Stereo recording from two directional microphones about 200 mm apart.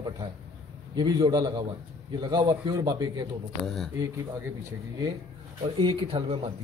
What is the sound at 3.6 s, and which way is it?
Speech, centre (ahead or behind).